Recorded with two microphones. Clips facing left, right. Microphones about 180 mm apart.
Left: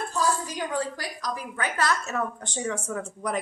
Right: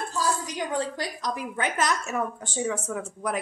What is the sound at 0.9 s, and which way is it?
A woman's voice, 25° right (ahead or behind).